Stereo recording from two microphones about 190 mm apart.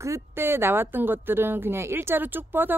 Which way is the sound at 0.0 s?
15° right (ahead or behind).